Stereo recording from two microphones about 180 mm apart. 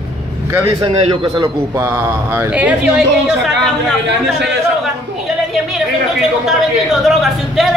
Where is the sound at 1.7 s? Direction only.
15° right (ahead or behind).